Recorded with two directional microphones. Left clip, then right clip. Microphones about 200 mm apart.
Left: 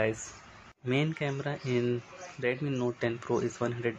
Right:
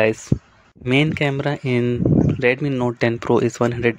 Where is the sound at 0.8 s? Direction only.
50° right (ahead or behind).